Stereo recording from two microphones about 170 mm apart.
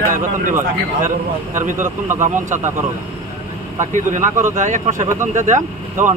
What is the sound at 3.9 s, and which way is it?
A man's voice, 50° right (ahead or behind).